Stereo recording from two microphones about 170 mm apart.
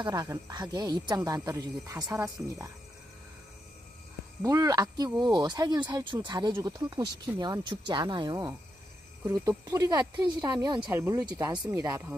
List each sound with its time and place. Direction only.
0.0 s speech: 25° right (ahead or behind)
4.4 s speech: 20° right (ahead or behind)
9.7 s speech: 20° right (ahead or behind)